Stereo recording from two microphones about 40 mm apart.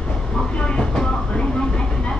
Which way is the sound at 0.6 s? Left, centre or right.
Left.